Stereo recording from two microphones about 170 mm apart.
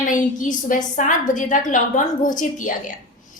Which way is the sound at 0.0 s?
50° left (ahead or behind).